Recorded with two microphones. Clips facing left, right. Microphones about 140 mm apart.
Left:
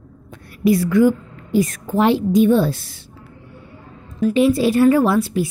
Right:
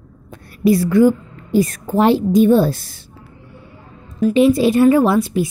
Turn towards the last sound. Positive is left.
turn(degrees=-20)  # may be behind; listen again after turning